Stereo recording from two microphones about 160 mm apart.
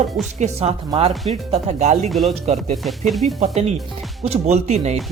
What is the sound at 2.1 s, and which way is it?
Speech, centre (ahead or behind).